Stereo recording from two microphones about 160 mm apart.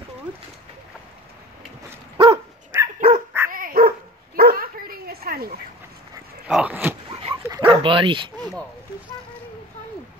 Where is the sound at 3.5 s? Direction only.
60° right (ahead or behind).